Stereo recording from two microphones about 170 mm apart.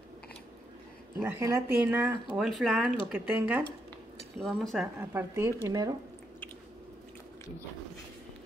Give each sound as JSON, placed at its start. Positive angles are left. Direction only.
{"t": 1.2, "sound": "speech", "side_deg": -15}
{"t": 4.4, "sound": "speech", "side_deg": 0}
{"t": 5.1, "sound": "speech", "side_deg": -15}